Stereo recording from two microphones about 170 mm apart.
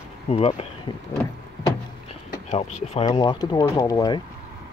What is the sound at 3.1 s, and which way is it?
Speech, 25° left (ahead or behind).